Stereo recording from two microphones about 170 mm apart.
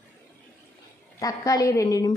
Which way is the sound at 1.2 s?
20° left (ahead or behind).